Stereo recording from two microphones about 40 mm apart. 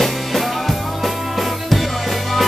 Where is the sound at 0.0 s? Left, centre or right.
Centre.